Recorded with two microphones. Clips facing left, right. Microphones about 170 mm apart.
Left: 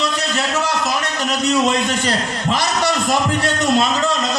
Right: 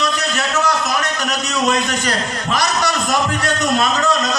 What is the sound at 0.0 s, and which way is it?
A man's voice, 30° left (ahead or behind).